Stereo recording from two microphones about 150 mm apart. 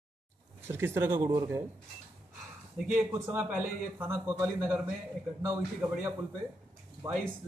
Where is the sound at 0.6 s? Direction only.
15° right (ahead or behind).